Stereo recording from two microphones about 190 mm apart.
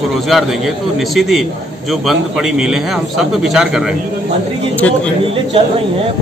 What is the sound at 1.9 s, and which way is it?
A man's voice, centre (ahead or behind).